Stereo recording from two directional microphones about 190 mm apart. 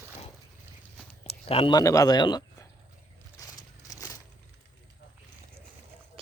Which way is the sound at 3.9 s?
20° left (ahead or behind).